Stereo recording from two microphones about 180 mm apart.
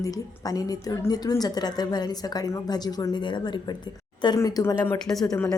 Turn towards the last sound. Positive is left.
turn(degrees=0)  # may be behind; listen again after turning